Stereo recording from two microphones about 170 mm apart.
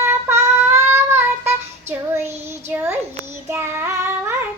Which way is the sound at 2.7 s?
10° right (ahead or behind).